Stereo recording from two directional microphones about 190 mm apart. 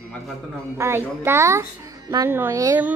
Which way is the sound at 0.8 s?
15° right (ahead or behind).